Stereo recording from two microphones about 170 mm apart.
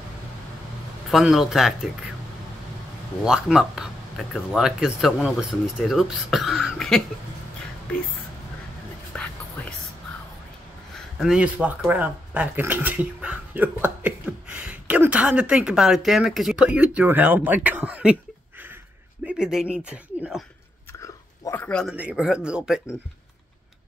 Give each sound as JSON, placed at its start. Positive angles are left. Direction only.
{"t": 1.1, "sound": "speech", "side_deg": 0}
{"t": 3.3, "sound": "speech", "side_deg": -5}
{"t": 9.1, "sound": "whispering", "side_deg": 5}
{"t": 11.0, "sound": "speech", "side_deg": -5}
{"t": 19.2, "sound": "speech", "side_deg": -5}
{"t": 21.0, "sound": "chewing", "side_deg": 15}
{"t": 21.6, "sound": "speech", "side_deg": 5}
{"t": 21.9, "sound": "speech", "side_deg": -5}